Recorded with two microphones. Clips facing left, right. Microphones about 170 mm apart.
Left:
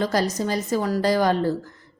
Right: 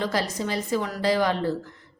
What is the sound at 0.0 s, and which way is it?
A woman's voice, 40° left (ahead or behind).